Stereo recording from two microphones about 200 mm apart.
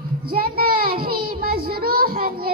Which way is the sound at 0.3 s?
50° right (ahead or behind).